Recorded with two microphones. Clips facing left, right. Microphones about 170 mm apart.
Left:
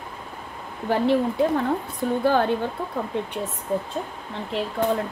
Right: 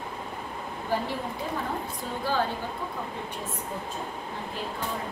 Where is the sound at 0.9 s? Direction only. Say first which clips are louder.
Left 6 dB; 70° left (ahead or behind).